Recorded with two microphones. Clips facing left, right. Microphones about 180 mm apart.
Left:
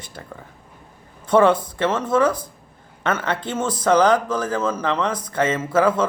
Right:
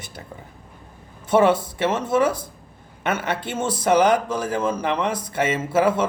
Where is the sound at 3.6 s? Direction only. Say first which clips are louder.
Even; 25° right (ahead or behind).